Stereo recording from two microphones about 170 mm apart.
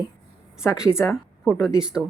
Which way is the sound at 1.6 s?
20° left (ahead or behind).